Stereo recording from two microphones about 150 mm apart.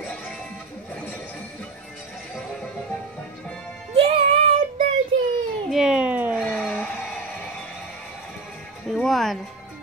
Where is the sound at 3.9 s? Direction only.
40° right (ahead or behind).